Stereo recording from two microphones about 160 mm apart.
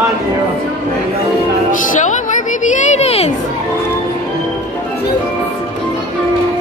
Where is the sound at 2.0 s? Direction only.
50° left (ahead or behind).